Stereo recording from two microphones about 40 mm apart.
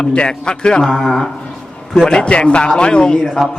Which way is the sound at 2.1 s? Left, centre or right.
Left.